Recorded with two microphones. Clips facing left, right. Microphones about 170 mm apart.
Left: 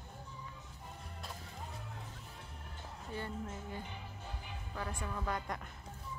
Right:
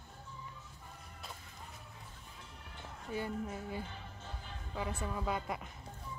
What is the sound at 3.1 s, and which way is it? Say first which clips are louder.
A woman's voice: right 4 dB; 10° right (ahead or behind).